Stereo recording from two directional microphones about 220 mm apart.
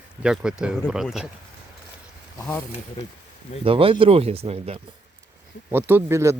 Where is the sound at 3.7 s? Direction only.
25° right (ahead or behind).